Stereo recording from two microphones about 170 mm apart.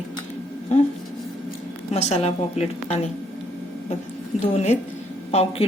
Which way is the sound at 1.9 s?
40° left (ahead or behind).